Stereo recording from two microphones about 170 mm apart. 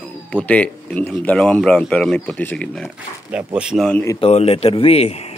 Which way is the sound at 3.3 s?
10° right (ahead or behind).